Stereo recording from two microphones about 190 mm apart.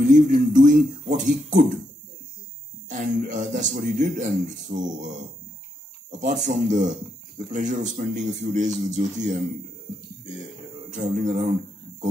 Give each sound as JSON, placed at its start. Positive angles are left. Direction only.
{"t": 0.0, "sound": "speech", "side_deg": -40}
{"t": 2.9, "sound": "speech", "side_deg": -40}
{"t": 11.0, "sound": "speech", "side_deg": -40}